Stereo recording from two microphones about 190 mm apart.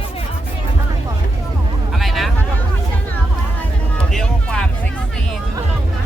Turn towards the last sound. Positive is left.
turn(degrees=5)  # may be behind; listen again after turning